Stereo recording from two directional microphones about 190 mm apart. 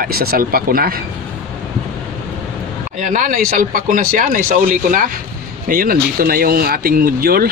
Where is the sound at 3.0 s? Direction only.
45° right (ahead or behind).